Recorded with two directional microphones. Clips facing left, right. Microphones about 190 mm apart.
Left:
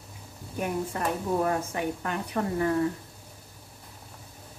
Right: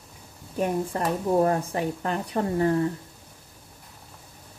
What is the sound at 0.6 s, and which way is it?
Speech, 35° right (ahead or behind).